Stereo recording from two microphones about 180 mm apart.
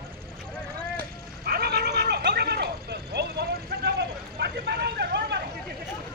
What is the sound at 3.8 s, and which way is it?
Vehicle, 65° right (ahead or behind).